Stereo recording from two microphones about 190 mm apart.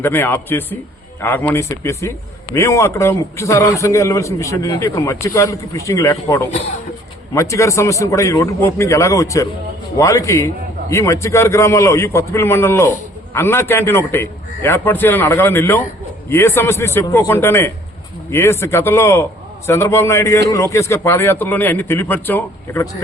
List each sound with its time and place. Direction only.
0.0 s a man's voice: 10° left (ahead or behind)